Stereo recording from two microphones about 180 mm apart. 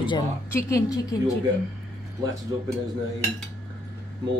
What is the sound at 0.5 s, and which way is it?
Speech, 15° left (ahead or behind).